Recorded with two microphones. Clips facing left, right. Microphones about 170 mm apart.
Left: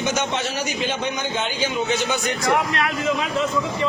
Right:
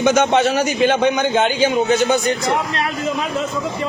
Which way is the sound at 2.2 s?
30° right (ahead or behind).